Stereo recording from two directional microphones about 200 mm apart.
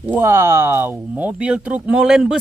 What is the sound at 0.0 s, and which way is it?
Speech, 10° right (ahead or behind).